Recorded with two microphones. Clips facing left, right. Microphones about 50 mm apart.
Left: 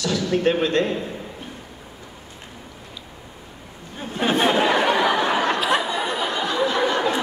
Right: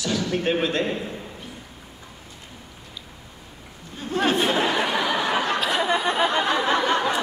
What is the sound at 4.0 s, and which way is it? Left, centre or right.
Chatter, left.